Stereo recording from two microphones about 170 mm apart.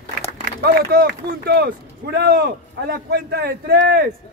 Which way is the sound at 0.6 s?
65° right (ahead or behind).